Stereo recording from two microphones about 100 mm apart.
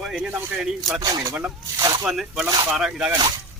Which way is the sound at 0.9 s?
40° right (ahead or behind).